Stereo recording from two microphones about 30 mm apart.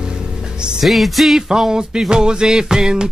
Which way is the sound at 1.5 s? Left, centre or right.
Right.